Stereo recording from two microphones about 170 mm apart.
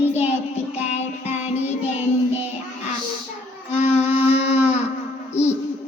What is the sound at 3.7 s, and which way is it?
Music, 40° left (ahead or behind).